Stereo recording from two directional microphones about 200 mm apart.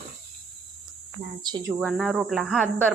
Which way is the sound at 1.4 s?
20° right (ahead or behind).